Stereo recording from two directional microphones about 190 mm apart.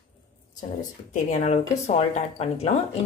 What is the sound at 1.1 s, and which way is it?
A woman's voice, 40° left (ahead or behind).